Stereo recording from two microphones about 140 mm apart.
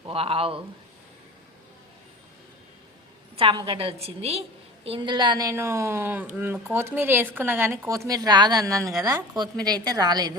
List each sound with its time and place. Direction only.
0.1 s a woman's voice: 45° right (ahead or behind)
3.3 s a woman's voice: 35° right (ahead or behind)
4.9 s speech: 35° right (ahead or behind)